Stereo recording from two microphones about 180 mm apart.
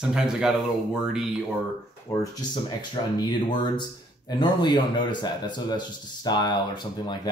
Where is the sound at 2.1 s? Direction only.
15° left (ahead or behind).